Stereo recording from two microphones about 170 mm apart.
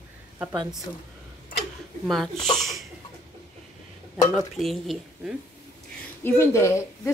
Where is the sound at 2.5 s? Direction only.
Centre (ahead or behind).